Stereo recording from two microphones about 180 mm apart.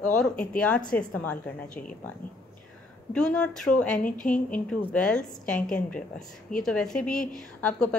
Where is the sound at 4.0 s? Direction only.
50° left (ahead or behind).